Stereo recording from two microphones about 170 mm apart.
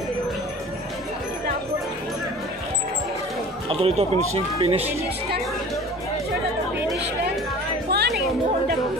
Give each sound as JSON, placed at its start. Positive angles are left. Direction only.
{"t": 3.6, "sound": "speech", "side_deg": -35}
{"t": 7.9, "sound": "music", "side_deg": -70}